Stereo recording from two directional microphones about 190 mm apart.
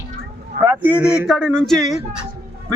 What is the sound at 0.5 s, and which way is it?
Speech, 55° right (ahead or behind).